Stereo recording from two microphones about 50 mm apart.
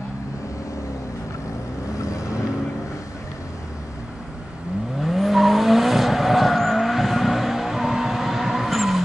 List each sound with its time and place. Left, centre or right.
2.0 s vehicle: left
5.0 s vehicle: centre